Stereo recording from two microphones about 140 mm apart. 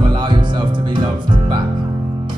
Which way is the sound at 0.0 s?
35° right (ahead or behind).